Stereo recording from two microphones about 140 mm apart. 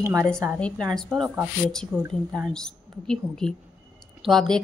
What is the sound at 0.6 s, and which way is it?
Speech, 5° left (ahead or behind).